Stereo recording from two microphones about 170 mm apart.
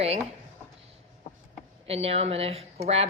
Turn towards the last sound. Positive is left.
turn(degrees=-35)  # may be behind; listen again after turning